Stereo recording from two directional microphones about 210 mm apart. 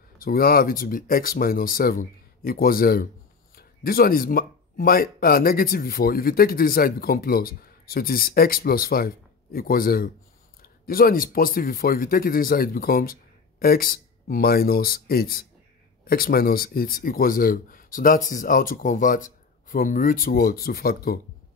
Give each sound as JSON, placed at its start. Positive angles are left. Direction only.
{"t": 0.2, "sound": "speech", "side_deg": 45}